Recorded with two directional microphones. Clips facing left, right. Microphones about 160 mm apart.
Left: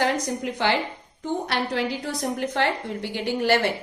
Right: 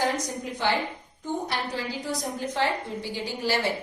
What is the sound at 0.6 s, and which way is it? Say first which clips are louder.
Speech: left 2 dB; 85° left.